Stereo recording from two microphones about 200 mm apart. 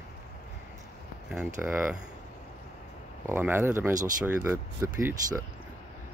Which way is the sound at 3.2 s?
10° right (ahead or behind).